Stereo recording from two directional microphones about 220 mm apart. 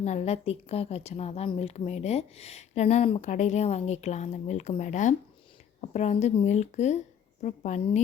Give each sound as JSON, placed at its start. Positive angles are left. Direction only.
{"t": 0.0, "sound": "a woman's voice", "side_deg": 30}